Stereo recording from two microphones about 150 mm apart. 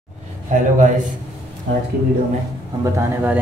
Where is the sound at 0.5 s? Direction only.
60° right (ahead or behind).